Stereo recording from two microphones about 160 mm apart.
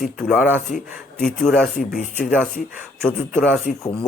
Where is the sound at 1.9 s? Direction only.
65° left (ahead or behind).